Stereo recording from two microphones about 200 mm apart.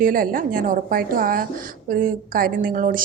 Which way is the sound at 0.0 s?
45° right (ahead or behind).